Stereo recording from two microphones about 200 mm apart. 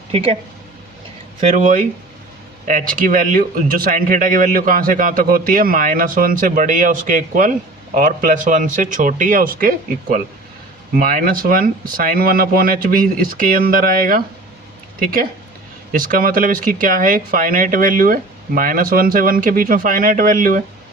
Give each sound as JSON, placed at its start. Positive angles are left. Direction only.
{"t": 0.1, "sound": "speech", "side_deg": -30}
{"t": 1.4, "sound": "speech", "side_deg": -35}